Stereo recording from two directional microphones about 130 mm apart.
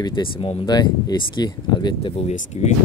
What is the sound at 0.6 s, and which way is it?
Speech, 30° left (ahead or behind).